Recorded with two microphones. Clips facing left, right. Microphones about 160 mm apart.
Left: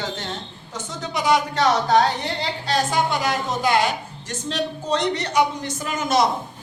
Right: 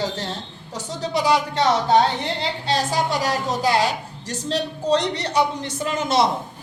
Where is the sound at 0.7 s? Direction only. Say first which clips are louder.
Right 4 dB; 35° right (ahead or behind).